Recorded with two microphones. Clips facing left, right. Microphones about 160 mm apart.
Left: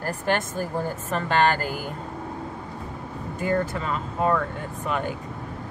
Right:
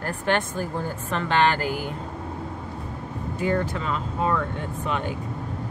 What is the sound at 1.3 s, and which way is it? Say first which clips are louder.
Speech: even; 45° left (ahead or behind).